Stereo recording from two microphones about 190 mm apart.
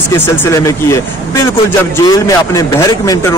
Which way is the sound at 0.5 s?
15° left (ahead or behind).